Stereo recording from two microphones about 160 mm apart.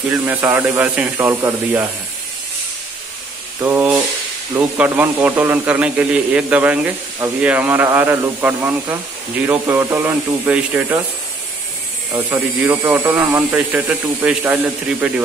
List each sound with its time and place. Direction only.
0.3 s a man's voice: 10° right (ahead or behind)
3.6 s a man's voice: 15° right (ahead or behind)
12.1 s a man's voice: 15° right (ahead or behind)